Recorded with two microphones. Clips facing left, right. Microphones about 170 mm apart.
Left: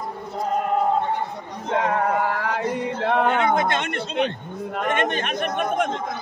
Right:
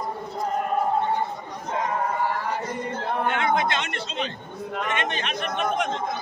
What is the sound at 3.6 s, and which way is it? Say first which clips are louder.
Speech: left 3 dB; 50° left (ahead or behind).